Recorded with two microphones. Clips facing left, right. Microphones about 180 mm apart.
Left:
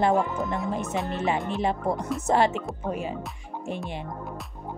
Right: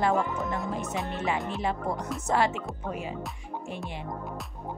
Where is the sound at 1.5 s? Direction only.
20° left (ahead or behind).